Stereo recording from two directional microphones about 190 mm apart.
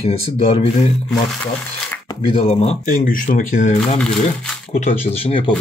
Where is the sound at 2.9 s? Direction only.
45° left (ahead or behind).